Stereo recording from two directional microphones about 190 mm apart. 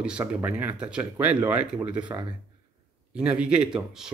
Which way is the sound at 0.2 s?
10° right (ahead or behind).